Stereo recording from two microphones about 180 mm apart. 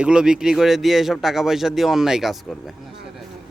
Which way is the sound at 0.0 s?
5° right (ahead or behind).